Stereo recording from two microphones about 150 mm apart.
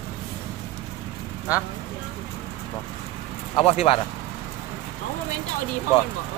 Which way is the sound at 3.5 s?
40° left (ahead or behind).